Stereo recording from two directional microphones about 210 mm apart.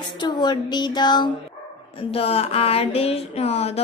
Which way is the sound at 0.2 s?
20° left (ahead or behind).